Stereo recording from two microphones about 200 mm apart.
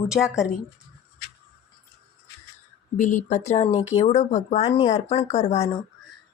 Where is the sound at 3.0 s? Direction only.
40° left (ahead or behind).